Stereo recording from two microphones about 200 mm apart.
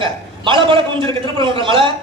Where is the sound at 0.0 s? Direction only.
25° right (ahead or behind).